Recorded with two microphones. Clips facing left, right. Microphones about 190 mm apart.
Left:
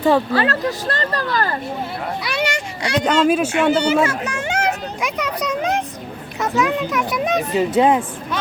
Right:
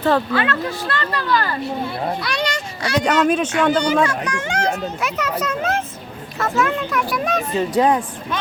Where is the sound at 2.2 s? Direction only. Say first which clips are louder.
Left 1 dB; 10° left (ahead or behind).